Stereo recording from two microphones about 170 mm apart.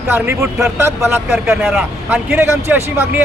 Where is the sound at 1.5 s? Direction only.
5° right (ahead or behind).